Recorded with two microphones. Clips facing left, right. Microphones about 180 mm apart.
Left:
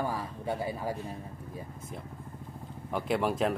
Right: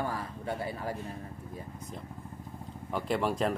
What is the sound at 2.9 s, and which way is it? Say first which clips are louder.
Speech: left 1 dB; centre (ahead or behind).